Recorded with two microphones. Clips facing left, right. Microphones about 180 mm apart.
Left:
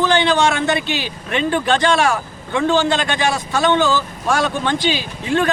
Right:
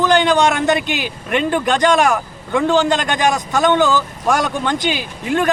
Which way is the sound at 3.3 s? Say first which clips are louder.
Right 3 dB; 15° right (ahead or behind).